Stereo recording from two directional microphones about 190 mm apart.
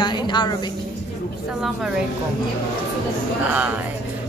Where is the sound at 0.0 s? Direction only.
25° left (ahead or behind).